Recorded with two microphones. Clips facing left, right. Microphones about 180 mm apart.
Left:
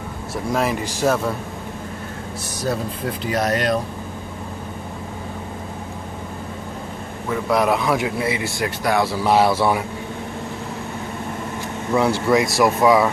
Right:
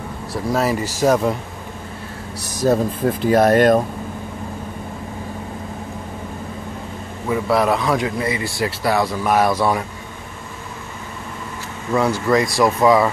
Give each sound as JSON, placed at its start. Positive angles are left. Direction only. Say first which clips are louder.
{"t": 0.5, "sound": "speech", "louder": "right 2 dB", "side_deg": -5}
{"t": 2.6, "sound": "speech", "louder": "right 7 dB", "side_deg": -40}
{"t": 7.2, "sound": "speech", "louder": "right 1 dB", "side_deg": -5}
{"t": 11.9, "sound": "speech", "louder": "even", "side_deg": 5}